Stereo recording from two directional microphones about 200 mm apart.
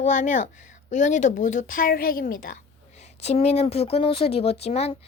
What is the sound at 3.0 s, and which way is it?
A woman's voice, 35° left (ahead or behind).